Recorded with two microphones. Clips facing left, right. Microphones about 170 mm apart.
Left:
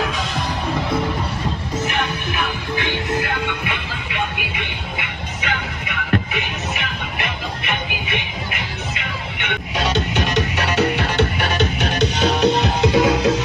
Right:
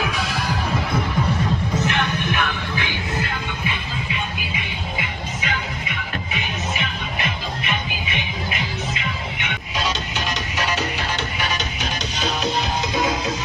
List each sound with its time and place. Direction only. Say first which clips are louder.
2.8 s music: left 7 dB; 65° left (ahead or behind)